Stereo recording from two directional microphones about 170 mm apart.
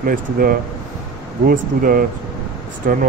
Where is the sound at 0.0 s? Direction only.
55° right (ahead or behind).